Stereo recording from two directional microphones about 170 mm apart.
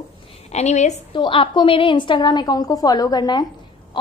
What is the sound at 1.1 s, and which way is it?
A woman's voice, 30° left (ahead or behind).